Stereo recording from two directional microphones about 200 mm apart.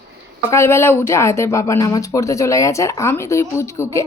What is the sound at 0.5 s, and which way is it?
Speech, 15° left (ahead or behind).